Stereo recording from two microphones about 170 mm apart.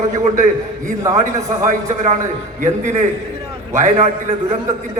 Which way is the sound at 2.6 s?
45° right (ahead or behind).